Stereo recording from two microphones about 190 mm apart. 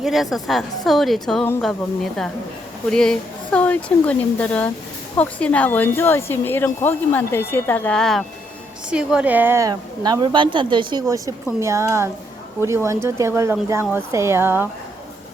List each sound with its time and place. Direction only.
0.0 s a woman's voice: centre (ahead or behind)